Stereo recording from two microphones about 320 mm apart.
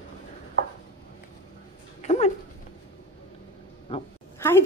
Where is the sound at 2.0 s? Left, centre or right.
Centre.